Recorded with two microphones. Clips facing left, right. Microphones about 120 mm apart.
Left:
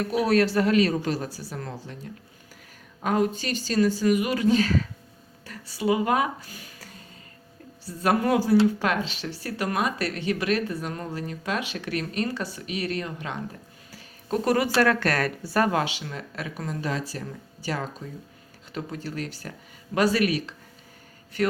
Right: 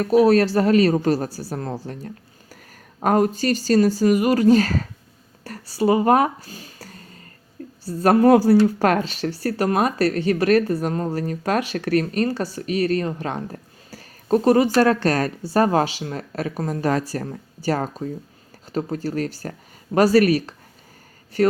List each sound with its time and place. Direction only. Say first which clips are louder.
0.0 s speech: right 7 dB; 40° right (ahead or behind)
3.0 s speech: right 6 dB; 45° right (ahead or behind)
6.5 s a sound: right 5 dB; 30° right (ahead or behind)
7.9 s speech: right 9 dB; 40° right (ahead or behind)